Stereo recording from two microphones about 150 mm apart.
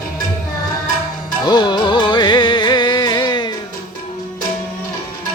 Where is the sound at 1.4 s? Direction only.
30° left (ahead or behind).